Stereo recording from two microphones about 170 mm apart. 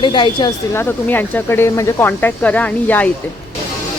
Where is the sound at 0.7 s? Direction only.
10° left (ahead or behind).